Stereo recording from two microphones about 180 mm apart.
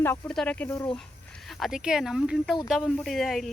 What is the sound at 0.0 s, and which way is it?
Speech, 10° left (ahead or behind).